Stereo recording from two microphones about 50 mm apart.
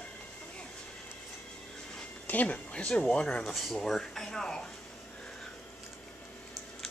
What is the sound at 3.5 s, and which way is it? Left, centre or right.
Speech, centre.